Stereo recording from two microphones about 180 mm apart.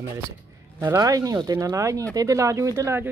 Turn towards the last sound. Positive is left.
turn(degrees=-15)  # may be behind; listen again after turning